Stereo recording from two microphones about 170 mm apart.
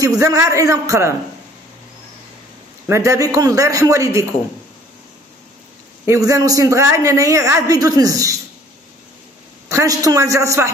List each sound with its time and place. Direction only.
0.0 s a man's voice: 20° right (ahead or behind)
2.9 s a man's voice: 20° right (ahead or behind)
6.0 s a man's voice: 20° right (ahead or behind)
9.7 s a man's voice: 20° right (ahead or behind)